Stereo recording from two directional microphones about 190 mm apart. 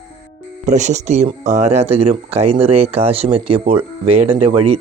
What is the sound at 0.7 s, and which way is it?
Speech, 40° right (ahead or behind).